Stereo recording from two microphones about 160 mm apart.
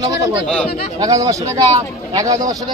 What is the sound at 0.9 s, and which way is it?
Speech, 25° right (ahead or behind).